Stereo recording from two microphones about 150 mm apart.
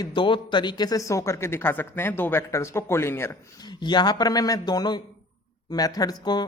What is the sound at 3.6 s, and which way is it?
Speech, 30° left (ahead or behind).